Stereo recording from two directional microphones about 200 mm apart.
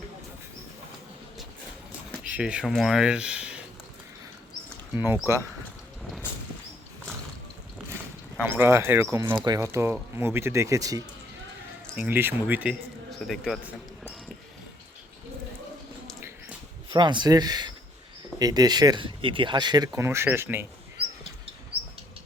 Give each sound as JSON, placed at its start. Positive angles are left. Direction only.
{"t": 2.1, "sound": "speech", "side_deg": -5}
{"t": 4.9, "sound": "speech", "side_deg": -10}
{"t": 8.4, "sound": "speech", "side_deg": -10}
{"t": 16.9, "sound": "speech", "side_deg": -25}